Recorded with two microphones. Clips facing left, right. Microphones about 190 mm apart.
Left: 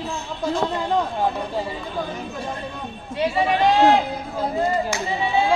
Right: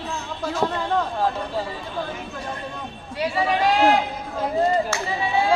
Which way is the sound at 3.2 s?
25° left (ahead or behind).